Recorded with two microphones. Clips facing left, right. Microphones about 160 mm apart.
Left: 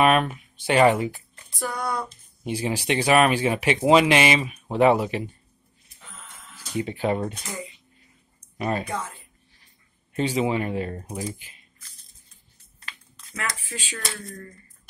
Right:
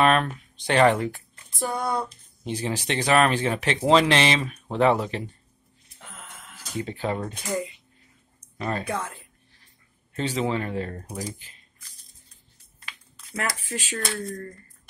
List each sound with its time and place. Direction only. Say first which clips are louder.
0.0 s speech: left 1 dB; 10° left (ahead or behind)
1.6 s a sound: right 2 dB; 25° right (ahead or behind)
2.4 s speech: left 2 dB; 10° left (ahead or behind)
6.8 s speech: left 3 dB; 15° left (ahead or behind)
8.5 s speech: left 3 dB; 15° left (ahead or behind)
10.1 s speech: left 3 dB; 10° left (ahead or behind)
13.7 s speech: right 4 dB; 40° right (ahead or behind)